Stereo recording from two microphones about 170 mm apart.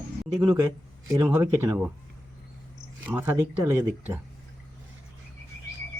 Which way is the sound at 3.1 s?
15° right (ahead or behind).